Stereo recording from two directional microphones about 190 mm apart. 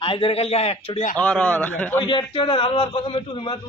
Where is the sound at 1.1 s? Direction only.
5° left (ahead or behind).